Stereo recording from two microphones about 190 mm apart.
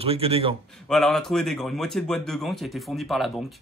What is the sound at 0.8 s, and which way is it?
Speech, centre (ahead or behind).